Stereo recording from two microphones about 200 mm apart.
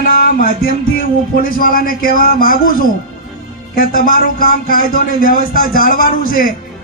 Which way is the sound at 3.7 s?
45° left (ahead or behind).